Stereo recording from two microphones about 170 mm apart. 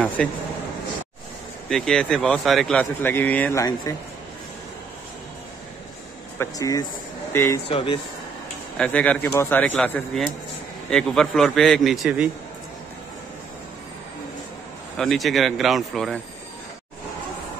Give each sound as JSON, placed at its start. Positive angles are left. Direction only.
{"t": 0.2, "sound": "a man's voice", "side_deg": 5}
{"t": 1.7, "sound": "speech", "side_deg": 5}
{"t": 6.3, "sound": "speech", "side_deg": 15}
{"t": 7.6, "sound": "speech", "side_deg": 30}
{"t": 8.7, "sound": "a man's voice", "side_deg": 5}
{"t": 15.0, "sound": "a man's voice", "side_deg": 0}